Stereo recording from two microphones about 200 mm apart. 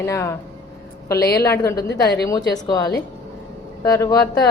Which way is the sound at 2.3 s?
20° left (ahead or behind).